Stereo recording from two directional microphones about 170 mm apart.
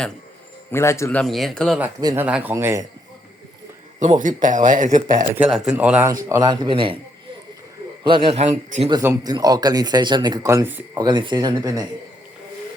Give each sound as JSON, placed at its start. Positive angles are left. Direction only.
{"t": 0.7, "sound": "a man's voice", "side_deg": 15}
{"t": 1.2, "sound": "speech", "side_deg": 0}
{"t": 2.1, "sound": "speech", "side_deg": -10}
{"t": 4.2, "sound": "speech", "side_deg": -50}
{"t": 5.5, "sound": "speech", "side_deg": -5}
{"t": 8.0, "sound": "a man's voice", "side_deg": -30}
{"t": 8.9, "sound": "speech", "side_deg": -20}